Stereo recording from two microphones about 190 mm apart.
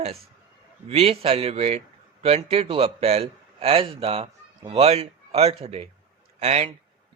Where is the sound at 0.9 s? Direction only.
30° right (ahead or behind).